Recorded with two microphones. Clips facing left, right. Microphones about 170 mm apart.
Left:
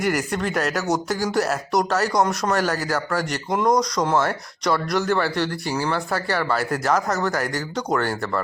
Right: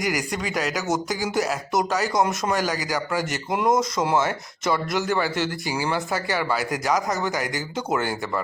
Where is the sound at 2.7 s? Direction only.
15° right (ahead or behind).